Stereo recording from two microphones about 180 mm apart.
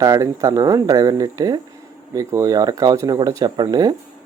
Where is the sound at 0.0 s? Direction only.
20° right (ahead or behind).